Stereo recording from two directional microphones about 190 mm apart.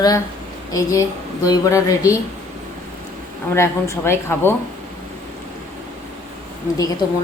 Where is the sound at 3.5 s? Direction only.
15° left (ahead or behind).